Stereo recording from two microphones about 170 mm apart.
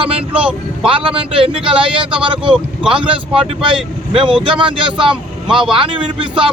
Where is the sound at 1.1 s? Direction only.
30° right (ahead or behind).